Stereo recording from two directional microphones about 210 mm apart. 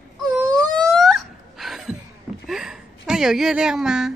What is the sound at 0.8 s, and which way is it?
Wail, centre (ahead or behind).